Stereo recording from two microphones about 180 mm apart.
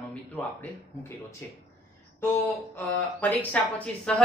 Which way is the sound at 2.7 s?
10° left (ahead or behind).